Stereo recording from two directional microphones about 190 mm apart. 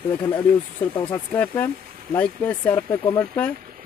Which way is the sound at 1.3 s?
10° left (ahead or behind).